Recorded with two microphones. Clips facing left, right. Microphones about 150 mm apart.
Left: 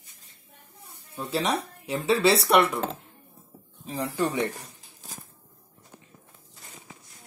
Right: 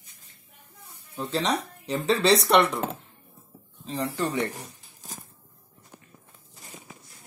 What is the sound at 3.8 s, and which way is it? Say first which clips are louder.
Speech: left 1 dB; 10° left (ahead or behind).